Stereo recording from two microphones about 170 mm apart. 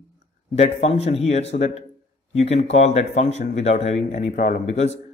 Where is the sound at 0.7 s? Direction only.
35° left (ahead or behind).